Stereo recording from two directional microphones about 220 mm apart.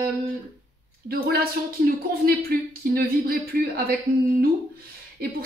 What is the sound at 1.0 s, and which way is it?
Speech, 45° right (ahead or behind).